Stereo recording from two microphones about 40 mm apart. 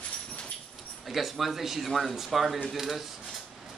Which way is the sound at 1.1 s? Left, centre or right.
Centre.